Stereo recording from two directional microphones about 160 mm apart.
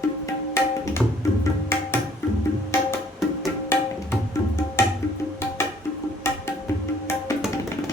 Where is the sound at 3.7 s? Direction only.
15° left (ahead or behind).